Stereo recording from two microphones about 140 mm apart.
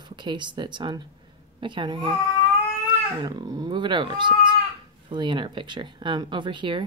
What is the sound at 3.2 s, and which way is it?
Speech, 30° right (ahead or behind).